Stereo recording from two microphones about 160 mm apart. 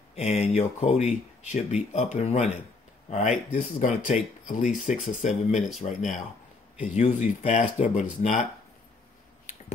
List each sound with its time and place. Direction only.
0.1 s speech: 45° left (ahead or behind)
3.5 s speech: 50° left (ahead or behind)